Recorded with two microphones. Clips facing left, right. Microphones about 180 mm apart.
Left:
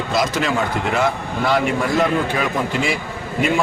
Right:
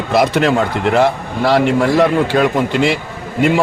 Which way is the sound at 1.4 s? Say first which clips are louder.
Right 6 dB; 75° right (ahead or behind).